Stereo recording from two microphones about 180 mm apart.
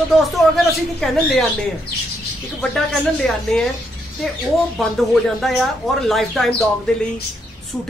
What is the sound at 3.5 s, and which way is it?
Speech, 5° left (ahead or behind).